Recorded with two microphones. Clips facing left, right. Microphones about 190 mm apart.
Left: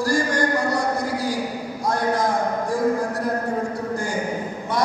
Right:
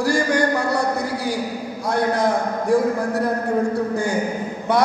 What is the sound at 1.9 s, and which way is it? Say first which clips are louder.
Speech: right 2 dB; 65° right (ahead or behind).